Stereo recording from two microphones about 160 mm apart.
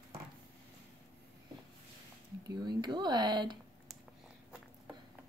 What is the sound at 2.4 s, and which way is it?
Speech, 25° right (ahead or behind).